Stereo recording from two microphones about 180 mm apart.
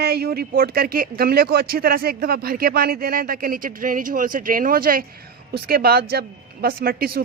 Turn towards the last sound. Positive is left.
turn(degrees=-55)  # may be behind; listen again after turning